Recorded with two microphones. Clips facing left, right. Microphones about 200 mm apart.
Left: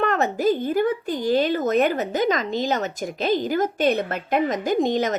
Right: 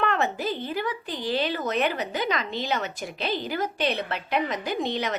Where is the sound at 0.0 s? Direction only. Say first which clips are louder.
Left 5 dB; 45° left (ahead or behind).